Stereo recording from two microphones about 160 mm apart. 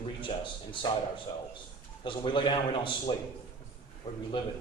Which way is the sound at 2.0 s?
30° left (ahead or behind).